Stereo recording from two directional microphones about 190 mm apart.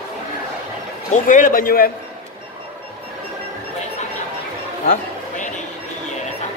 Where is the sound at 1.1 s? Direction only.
45° left (ahead or behind).